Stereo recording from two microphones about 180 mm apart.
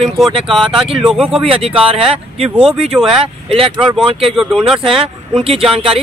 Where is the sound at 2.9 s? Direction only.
5° right (ahead or behind).